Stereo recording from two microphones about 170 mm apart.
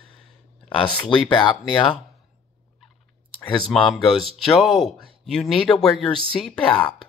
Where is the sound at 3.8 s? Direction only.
Centre (ahead or behind).